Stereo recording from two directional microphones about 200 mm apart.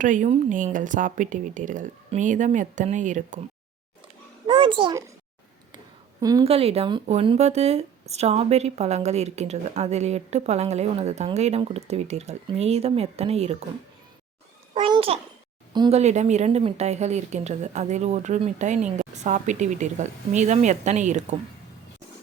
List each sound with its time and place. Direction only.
0.0 s speech: 40° right (ahead or behind)
4.4 s a child's voice: 25° right (ahead or behind)
6.1 s speech: 20° right (ahead or behind)
14.8 s a child's voice: 25° right (ahead or behind)
16.0 s speech: 35° right (ahead or behind)